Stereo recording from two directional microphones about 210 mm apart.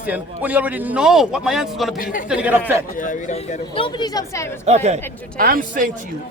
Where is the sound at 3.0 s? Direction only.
35° left (ahead or behind); by 4.4 s 20° left (ahead or behind).